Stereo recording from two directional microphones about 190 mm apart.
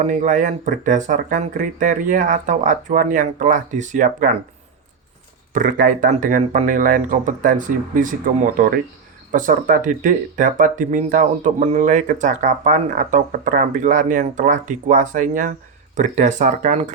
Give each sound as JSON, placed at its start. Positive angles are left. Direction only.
{"t": 0.0, "sound": "speech", "side_deg": -40}
{"t": 5.5, "sound": "speech", "side_deg": -45}